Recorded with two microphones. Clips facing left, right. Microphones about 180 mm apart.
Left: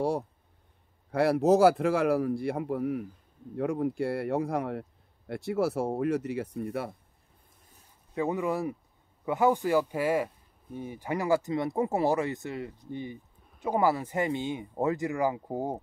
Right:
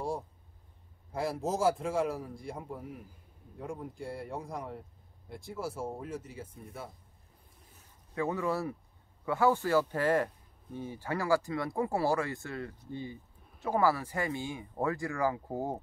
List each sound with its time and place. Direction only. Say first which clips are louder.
1.1 s a man's voice: left 11 dB; 70° left (ahead or behind)
8.1 s speech: left 3 dB; 15° left (ahead or behind)